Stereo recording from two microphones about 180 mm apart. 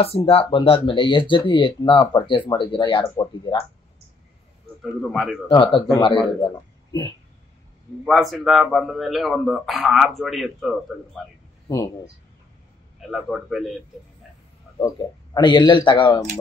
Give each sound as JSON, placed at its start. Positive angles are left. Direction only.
{"t": 0.0, "sound": "speech", "side_deg": 30}
{"t": 5.1, "sound": "speech", "side_deg": 0}
{"t": 5.5, "sound": "speech", "side_deg": 30}
{"t": 8.0, "sound": "speech", "side_deg": 0}
{"t": 13.1, "sound": "speech", "side_deg": 0}
{"t": 14.8, "sound": "speech", "side_deg": 25}